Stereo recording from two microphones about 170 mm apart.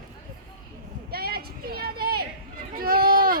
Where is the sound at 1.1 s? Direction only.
65° right (ahead or behind).